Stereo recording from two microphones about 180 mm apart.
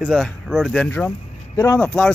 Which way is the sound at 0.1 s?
Centre (ahead or behind).